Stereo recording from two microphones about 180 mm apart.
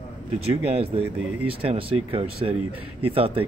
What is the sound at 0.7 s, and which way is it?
Speech, 35° right (ahead or behind).